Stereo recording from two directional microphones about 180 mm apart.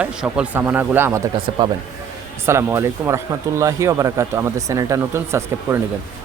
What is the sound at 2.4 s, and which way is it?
Speech, 15° right (ahead or behind).